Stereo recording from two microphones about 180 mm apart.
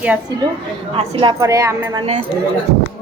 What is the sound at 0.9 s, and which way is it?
A woman's voice, 25° right (ahead or behind).